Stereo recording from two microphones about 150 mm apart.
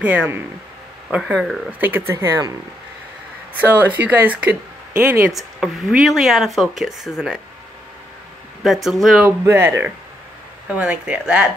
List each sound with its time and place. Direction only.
0.0 s speech: 10° right (ahead or behind)
3.5 s speech: 10° right (ahead or behind)
8.6 s speech: centre (ahead or behind)
9.2 s speech: 15° right (ahead or behind)